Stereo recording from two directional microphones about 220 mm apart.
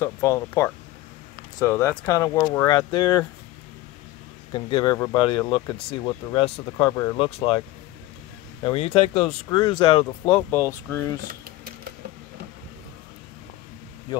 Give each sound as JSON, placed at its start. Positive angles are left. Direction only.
{"t": 0.0, "sound": "speech", "side_deg": 15}
{"t": 4.5, "sound": "speech", "side_deg": 20}
{"t": 8.6, "sound": "speech", "side_deg": 25}